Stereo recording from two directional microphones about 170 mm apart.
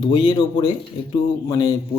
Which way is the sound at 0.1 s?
30° left (ahead or behind).